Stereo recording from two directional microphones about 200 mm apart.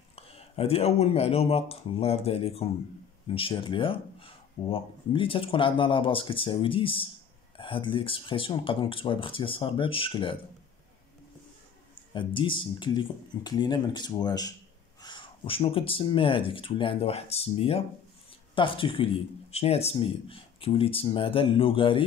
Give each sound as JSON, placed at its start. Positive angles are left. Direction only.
{"t": 0.1, "sound": "speech", "side_deg": 30}
{"t": 12.1, "sound": "speech", "side_deg": 25}